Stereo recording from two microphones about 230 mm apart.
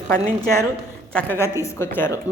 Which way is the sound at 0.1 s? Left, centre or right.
Centre.